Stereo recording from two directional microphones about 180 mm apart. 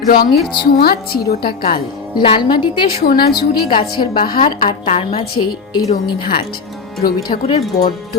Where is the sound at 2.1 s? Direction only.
25° left (ahead or behind).